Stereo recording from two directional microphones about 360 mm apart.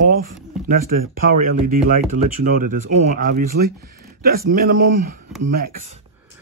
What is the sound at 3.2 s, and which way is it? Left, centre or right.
Speech, right.